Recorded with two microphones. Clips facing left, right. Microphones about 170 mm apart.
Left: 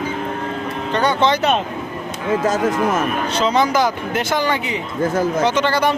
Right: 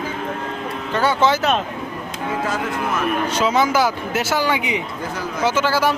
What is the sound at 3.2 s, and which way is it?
Speech, 10° right (ahead or behind).